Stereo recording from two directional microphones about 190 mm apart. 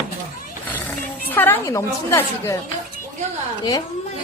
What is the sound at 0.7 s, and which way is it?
A woman's voice, 10° left (ahead or behind).